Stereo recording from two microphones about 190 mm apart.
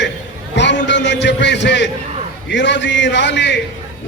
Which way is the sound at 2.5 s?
70° left (ahead or behind).